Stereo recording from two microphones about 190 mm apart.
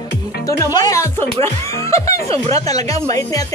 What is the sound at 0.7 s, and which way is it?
Speech, 15° left (ahead or behind).